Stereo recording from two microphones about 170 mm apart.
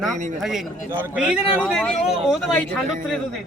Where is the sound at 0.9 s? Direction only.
15° right (ahead or behind).